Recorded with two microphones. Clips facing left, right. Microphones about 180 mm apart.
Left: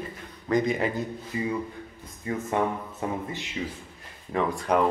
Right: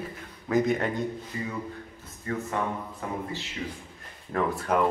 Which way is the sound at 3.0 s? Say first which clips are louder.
Left 4 dB; 25° left (ahead or behind).